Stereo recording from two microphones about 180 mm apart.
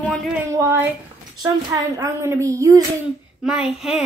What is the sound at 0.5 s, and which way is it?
A woman's voice, 15° right (ahead or behind).